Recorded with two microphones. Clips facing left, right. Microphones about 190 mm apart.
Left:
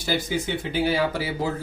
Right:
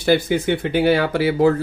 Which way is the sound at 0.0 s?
60° right (ahead or behind).